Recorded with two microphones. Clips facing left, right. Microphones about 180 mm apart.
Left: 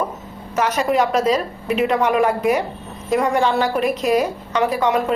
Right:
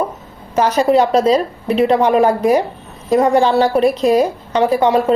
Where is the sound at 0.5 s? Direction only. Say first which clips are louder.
Right 5 dB; 30° right (ahead or behind).